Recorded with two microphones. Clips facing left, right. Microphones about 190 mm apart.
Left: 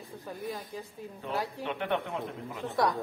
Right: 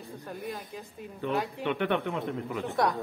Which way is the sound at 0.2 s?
Centre (ahead or behind).